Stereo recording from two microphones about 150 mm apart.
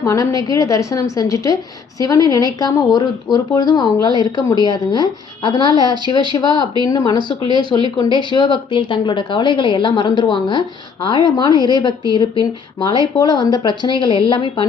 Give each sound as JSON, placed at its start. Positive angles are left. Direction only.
{"t": 0.0, "sound": "speech", "side_deg": 20}
{"t": 7.4, "sound": "speech", "side_deg": -30}
{"t": 7.9, "sound": "a woman's voice", "side_deg": 30}